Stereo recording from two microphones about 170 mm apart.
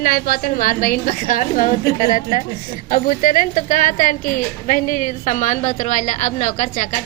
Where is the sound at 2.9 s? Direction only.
50° left (ahead or behind).